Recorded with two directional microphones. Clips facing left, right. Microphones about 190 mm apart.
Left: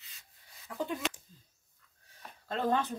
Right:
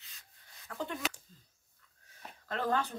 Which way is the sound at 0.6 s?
15° left (ahead or behind).